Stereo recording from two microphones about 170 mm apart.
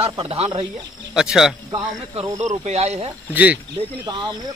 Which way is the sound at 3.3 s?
10° right (ahead or behind).